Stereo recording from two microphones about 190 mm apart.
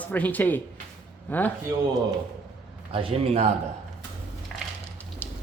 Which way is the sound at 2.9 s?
30° right (ahead or behind).